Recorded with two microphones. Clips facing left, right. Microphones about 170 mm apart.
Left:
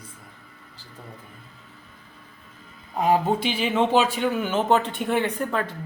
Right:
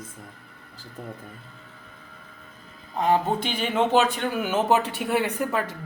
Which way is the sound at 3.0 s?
5° left (ahead or behind).